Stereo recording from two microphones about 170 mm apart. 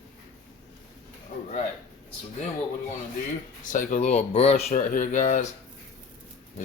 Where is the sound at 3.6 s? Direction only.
50° left (ahead or behind).